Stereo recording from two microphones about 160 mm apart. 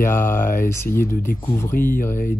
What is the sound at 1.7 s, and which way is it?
Speech, 60° left (ahead or behind).